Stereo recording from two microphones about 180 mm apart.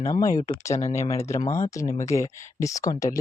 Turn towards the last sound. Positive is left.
turn(degrees=20)  # may be behind; listen again after turning